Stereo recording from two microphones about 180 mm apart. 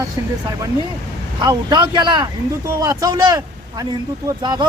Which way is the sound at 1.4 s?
25° right (ahead or behind).